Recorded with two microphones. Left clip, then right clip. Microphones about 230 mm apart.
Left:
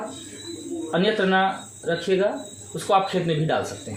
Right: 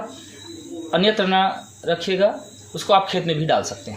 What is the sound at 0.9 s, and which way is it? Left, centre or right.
Speech, right.